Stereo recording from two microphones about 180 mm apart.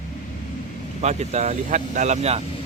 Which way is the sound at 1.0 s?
40° right (ahead or behind).